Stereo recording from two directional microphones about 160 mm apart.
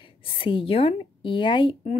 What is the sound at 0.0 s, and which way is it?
A woman's voice, 35° left (ahead or behind).